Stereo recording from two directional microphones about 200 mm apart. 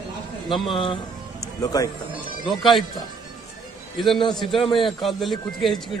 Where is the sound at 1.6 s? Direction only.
20° left (ahead or behind).